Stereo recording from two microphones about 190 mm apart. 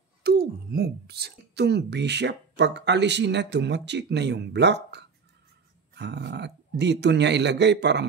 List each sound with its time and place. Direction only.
0.2 s speech: 55° right (ahead or behind)